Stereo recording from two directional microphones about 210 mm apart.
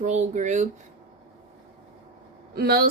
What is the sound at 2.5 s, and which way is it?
Speech, 45° right (ahead or behind).